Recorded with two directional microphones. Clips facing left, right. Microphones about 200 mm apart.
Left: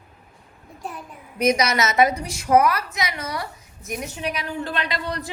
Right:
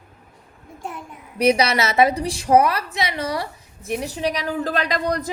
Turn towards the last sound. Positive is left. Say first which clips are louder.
# right 5 dB
turn(degrees=-40)  # may be behind; listen again after turning